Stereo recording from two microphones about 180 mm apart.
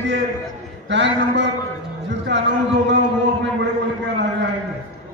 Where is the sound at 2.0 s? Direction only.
80° right.